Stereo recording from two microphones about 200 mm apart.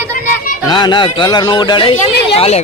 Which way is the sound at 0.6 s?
20° left (ahead or behind).